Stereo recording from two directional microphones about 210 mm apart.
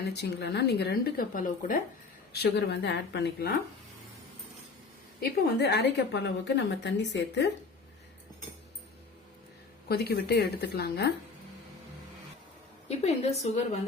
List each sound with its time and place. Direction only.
0.1 s speech: 50° left (ahead or behind)
2.3 s speech: 50° left (ahead or behind)
5.2 s a woman's voice: 50° left (ahead or behind)
9.9 s speech: 50° left (ahead or behind)
12.9 s a woman's voice: 30° left (ahead or behind)